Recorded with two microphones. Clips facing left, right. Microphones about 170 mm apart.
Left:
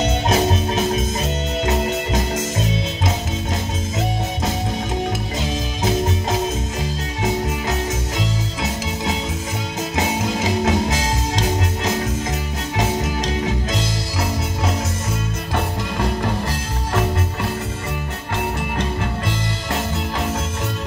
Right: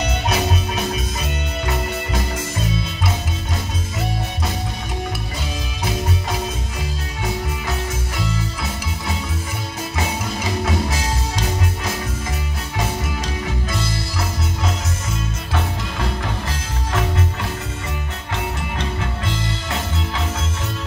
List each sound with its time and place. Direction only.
0.0 s music: 25° left (ahead or behind)
9.9 s music: 20° left (ahead or behind)